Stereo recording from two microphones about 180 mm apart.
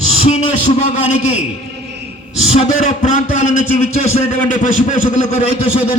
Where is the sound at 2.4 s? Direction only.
35° left (ahead or behind).